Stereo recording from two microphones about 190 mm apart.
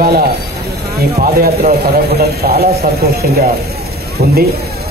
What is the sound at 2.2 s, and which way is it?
A man's voice, 55° right (ahead or behind).